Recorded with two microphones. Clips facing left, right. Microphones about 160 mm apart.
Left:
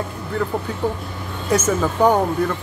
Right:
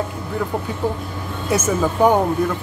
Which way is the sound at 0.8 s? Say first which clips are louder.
Right 1 dB; 10° right (ahead or behind).